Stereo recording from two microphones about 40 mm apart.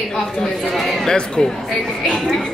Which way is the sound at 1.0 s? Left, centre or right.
Left.